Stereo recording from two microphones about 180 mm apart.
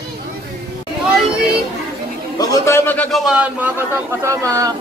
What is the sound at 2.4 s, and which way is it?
Speech, 15° left (ahead or behind).